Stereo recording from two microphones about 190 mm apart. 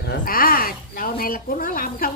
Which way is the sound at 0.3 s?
50° left (ahead or behind).